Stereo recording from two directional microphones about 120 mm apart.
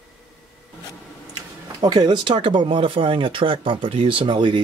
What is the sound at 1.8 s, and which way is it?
Speech, 35° right (ahead or behind).